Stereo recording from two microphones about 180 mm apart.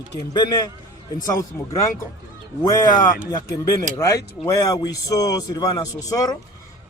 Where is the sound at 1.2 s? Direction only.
20° left (ahead or behind).